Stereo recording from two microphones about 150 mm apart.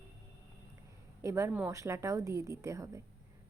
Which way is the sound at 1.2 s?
20° right (ahead or behind).